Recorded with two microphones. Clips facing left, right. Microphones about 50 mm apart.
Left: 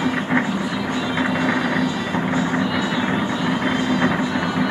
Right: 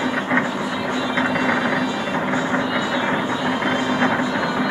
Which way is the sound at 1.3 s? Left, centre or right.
Centre.